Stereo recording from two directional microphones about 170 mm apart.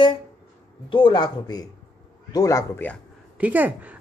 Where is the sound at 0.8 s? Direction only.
30° left (ahead or behind); by 3.0 s 15° left (ahead or behind).